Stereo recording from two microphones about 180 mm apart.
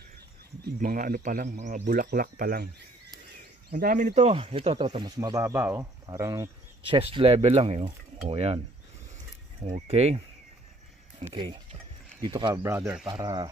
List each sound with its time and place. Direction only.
0.7 s speech: 55° right (ahead or behind)
3.7 s speech: 50° right (ahead or behind); by 6.5 s 15° right (ahead or behind)
6.9 s cutlery: 30° right (ahead or behind)
9.7 s cutlery: 35° right (ahead or behind)
11.1 s speech: 30° right (ahead or behind)
12.6 s speech: 10° right (ahead or behind)
13.0 s speech: 20° right (ahead or behind)